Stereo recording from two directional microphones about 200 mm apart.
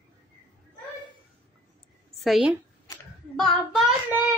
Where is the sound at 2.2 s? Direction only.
Centre (ahead or behind).